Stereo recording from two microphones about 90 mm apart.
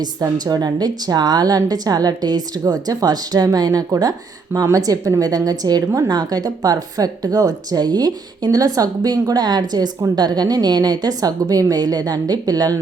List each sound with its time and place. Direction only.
0.0 s a woman's voice: 45° right (ahead or behind)